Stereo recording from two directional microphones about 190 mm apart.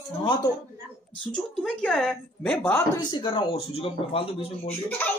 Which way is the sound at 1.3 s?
Centre (ahead or behind).